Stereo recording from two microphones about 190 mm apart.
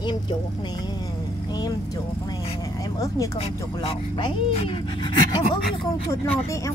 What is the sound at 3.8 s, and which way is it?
Speech, 25° left (ahead or behind).